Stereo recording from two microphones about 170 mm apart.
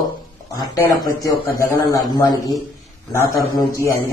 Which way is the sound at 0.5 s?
20° left (ahead or behind).